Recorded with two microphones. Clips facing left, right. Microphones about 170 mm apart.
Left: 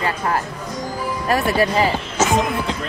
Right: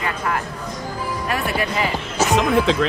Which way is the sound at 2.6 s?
90° right.